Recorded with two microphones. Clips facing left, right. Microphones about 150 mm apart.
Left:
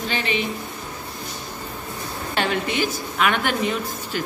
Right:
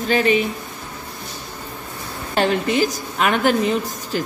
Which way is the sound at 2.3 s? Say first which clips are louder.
Right 5 dB; 35° right (ahead or behind).